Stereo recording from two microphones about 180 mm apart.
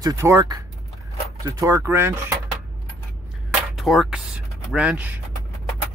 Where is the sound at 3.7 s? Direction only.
Centre (ahead or behind).